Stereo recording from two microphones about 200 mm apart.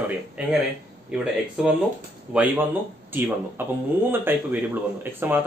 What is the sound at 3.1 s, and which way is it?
A man's voice, 10° right (ahead or behind).